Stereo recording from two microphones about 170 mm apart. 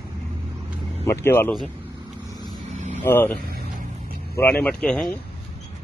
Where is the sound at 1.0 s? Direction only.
15° left (ahead or behind).